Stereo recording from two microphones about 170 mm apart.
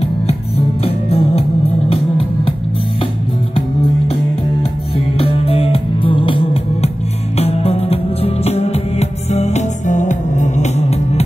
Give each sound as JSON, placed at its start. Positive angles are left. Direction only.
{"t": 0.8, "sound": "music", "side_deg": 35}
{"t": 4.9, "sound": "music", "side_deg": 35}